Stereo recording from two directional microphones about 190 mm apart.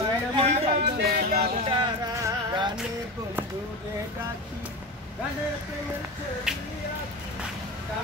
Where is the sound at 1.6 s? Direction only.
30° right (ahead or behind).